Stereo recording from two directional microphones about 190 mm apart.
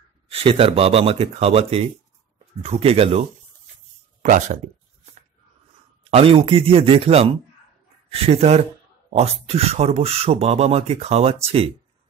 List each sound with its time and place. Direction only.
0.3 s speech: 30° right (ahead or behind)
6.0 s speech: 30° right (ahead or behind)